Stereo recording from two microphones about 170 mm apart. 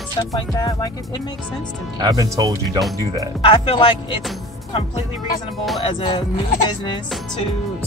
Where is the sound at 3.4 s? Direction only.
30° left (ahead or behind).